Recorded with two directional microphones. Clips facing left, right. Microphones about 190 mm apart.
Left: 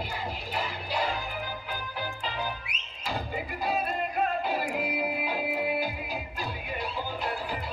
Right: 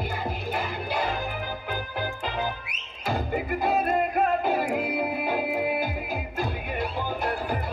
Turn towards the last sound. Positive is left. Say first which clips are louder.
# right 5 dB
turn(degrees=-50)  # may be behind; listen again after turning